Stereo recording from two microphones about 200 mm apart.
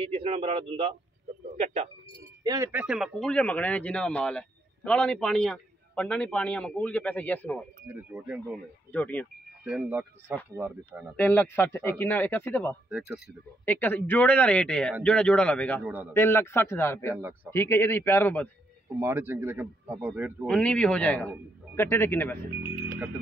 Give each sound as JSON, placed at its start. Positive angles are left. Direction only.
{"t": 0.0, "sound": "a man's voice", "side_deg": -30}
{"t": 2.4, "sound": "speech", "side_deg": -15}
{"t": 7.9, "sound": "a man's voice", "side_deg": -5}
{"t": 8.9, "sound": "a man's voice", "side_deg": 10}
{"t": 9.7, "sound": "a man's voice", "side_deg": -5}
{"t": 11.1, "sound": "a man's voice", "side_deg": 10}
{"t": 15.8, "sound": "a man's voice", "side_deg": -10}
{"t": 16.1, "sound": "a man's voice", "side_deg": 10}
{"t": 18.9, "sound": "a man's voice", "side_deg": -10}
{"t": 20.4, "sound": "a man's voice", "side_deg": 5}